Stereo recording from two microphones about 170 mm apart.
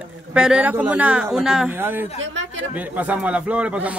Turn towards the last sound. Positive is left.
turn(degrees=-5)  # may be behind; listen again after turning